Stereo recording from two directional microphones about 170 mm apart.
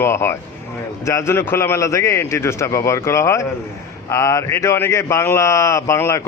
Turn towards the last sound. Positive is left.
turn(degrees=15)  # may be behind; listen again after turning